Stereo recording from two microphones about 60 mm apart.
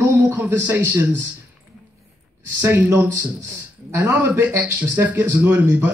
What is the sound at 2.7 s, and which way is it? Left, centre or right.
Speech, right.